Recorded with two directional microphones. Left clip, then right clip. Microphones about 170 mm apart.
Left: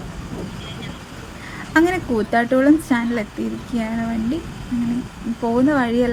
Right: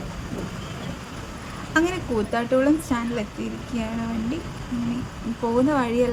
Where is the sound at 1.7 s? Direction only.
20° left (ahead or behind).